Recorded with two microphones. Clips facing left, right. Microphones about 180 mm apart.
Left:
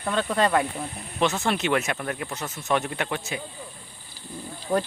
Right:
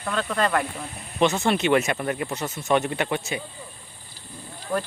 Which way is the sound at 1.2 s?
Centre (ahead or behind).